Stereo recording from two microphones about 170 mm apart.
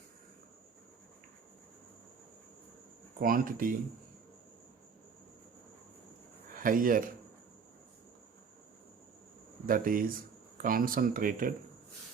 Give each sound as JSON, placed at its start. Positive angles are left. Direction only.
{"t": 3.2, "sound": "speech", "side_deg": -55}
{"t": 6.5, "sound": "speech", "side_deg": -55}
{"t": 9.6, "sound": "speech", "side_deg": -55}